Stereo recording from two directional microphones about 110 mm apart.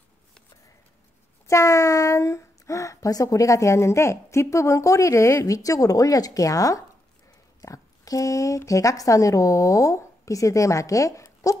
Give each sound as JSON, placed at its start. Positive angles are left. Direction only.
{"t": 1.5, "sound": "speech", "side_deg": 25}